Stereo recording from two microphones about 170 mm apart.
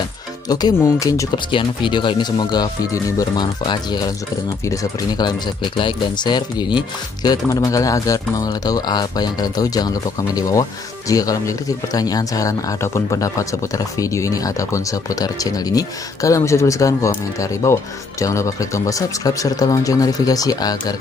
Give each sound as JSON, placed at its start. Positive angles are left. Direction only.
{"t": 0.5, "sound": "speech", "side_deg": 25}